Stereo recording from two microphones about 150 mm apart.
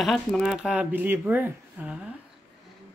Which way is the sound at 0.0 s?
Centre (ahead or behind).